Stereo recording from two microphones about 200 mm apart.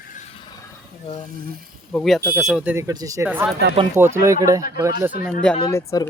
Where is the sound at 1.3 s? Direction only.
45° right (ahead or behind).